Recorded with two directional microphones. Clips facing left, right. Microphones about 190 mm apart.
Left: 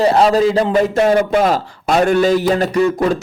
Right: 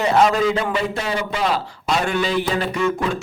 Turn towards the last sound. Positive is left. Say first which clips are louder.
# left 6 dB
turn(degrees=40)  # may be behind; listen again after turning